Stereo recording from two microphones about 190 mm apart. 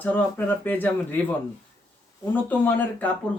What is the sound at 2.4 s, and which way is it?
Speech, 10° left (ahead or behind).